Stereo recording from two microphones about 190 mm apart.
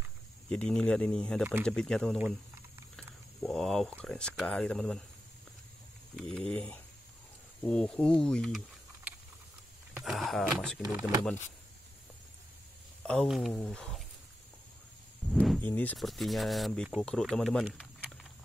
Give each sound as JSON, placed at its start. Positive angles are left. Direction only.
{"t": 0.5, "sound": "speech", "side_deg": 5}
{"t": 6.1, "sound": "speech", "side_deg": 5}
{"t": 10.8, "sound": "speech", "side_deg": -15}
{"t": 13.0, "sound": "speech", "side_deg": 5}
{"t": 15.3, "sound": "speech", "side_deg": 5}